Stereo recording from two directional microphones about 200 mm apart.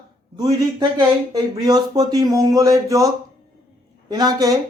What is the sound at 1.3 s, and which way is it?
Speech, 20° right (ahead or behind).